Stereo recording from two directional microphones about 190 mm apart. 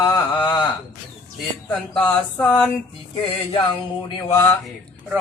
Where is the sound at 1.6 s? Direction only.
10° left (ahead or behind).